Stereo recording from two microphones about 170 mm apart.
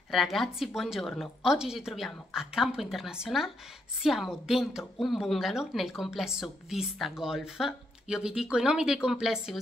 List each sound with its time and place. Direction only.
0.1 s a woman's voice: centre (ahead or behind)